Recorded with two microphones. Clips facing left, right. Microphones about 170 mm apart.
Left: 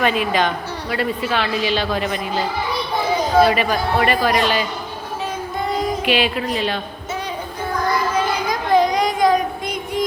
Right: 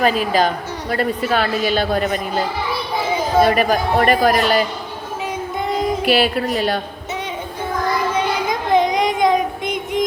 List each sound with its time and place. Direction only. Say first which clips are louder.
0.0 s a woman's voice: right 2 dB; 40° right (ahead or behind)
3.4 s a woman's voice: right 2 dB; 45° right (ahead or behind)
5.6 s music: right 1 dB; 20° right (ahead or behind)
6.1 s a woman's voice: right 4 dB; 40° right (ahead or behind)
8.4 s child singing: left 1 dB; 25° right (ahead or behind)